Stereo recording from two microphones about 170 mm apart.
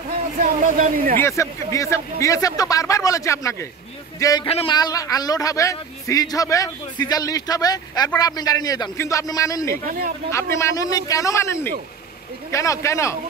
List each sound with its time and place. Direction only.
0.4 s speech: 50° right (ahead or behind)
1.2 s a man's voice: 15° left (ahead or behind)
4.5 s a man's voice: 35° left (ahead or behind)
4.7 s a man's voice: 20° left (ahead or behind)